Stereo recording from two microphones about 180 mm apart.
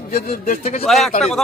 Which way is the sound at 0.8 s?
Centre (ahead or behind).